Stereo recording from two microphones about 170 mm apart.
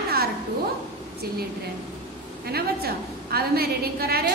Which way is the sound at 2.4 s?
65° right (ahead or behind).